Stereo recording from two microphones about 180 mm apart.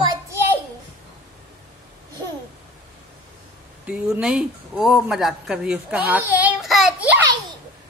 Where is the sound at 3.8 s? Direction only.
5° right (ahead or behind).